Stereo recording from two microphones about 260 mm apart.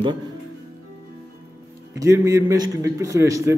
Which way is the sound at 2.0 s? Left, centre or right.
Centre.